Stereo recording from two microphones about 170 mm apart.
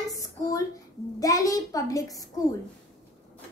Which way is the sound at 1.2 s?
20° left (ahead or behind).